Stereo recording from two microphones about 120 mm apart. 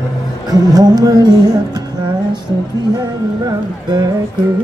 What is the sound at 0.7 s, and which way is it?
Music, 30° right (ahead or behind).